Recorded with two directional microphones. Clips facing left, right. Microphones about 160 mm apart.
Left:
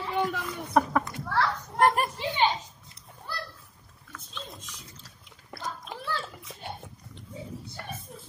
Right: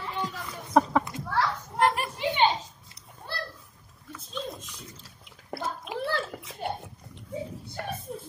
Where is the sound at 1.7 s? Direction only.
45° left (ahead or behind).